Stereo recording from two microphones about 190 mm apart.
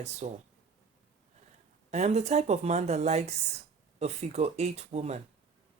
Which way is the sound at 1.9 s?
35° right (ahead or behind).